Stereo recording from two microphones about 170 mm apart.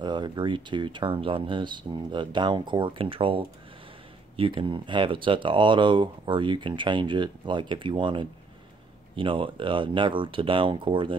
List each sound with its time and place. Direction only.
0.0 s speech: 25° right (ahead or behind)